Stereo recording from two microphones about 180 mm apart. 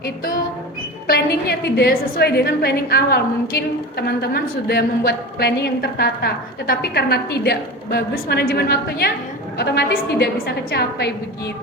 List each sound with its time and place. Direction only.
1.0 s a woman's voice: 60° left (ahead or behind)